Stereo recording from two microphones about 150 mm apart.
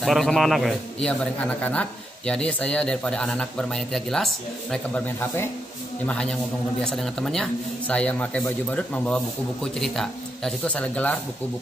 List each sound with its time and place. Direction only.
0.0 s a man's voice: centre (ahead or behind)
5.2 s a man's voice: 15° left (ahead or behind)